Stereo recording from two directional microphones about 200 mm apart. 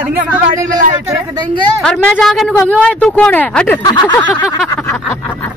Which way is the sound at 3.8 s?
20° left (ahead or behind).